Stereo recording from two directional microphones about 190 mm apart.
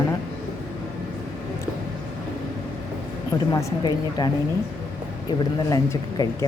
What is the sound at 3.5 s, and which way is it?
Speech, 20° left (ahead or behind).